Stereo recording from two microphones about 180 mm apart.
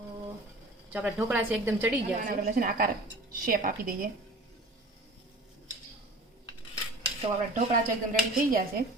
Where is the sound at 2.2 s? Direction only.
50° right (ahead or behind).